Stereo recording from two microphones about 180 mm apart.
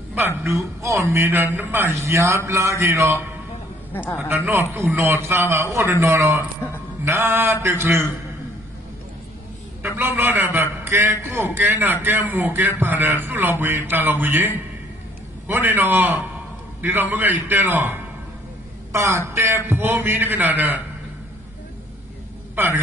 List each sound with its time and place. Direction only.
0.4 s a man's voice: 15° right (ahead or behind)
3.9 s a woman's voice: 10° left (ahead or behind)
4.5 s a man's voice: 10° right (ahead or behind)
9.8 s a man's voice: 10° right (ahead or behind)